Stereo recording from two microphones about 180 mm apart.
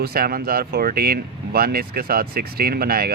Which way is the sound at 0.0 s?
60° right (ahead or behind).